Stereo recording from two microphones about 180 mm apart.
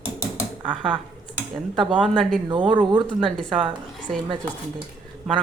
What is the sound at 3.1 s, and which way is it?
Speech, 5° left (ahead or behind).